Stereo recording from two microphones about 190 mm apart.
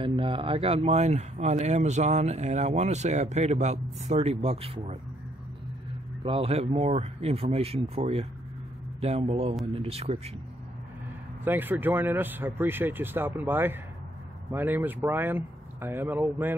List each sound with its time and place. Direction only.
0.0 s a man's voice: 25° right (ahead or behind)
6.2 s speech: 30° right (ahead or behind)
11.4 s speech: 10° right (ahead or behind)